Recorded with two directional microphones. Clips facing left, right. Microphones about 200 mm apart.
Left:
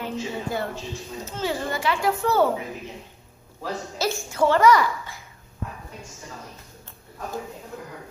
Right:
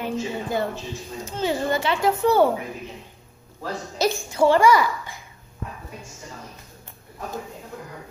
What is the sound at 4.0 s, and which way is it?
A child's voice, 15° right (ahead or behind).